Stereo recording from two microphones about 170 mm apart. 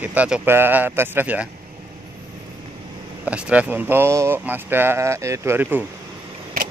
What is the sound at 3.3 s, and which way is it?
Speech, 5° right (ahead or behind).